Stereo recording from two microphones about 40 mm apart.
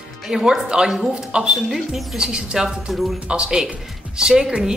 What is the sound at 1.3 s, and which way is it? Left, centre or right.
A woman's voice, right.